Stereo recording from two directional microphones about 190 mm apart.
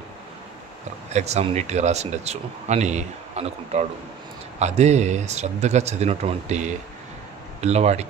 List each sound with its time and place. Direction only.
1.1 s speech: 35° right (ahead or behind)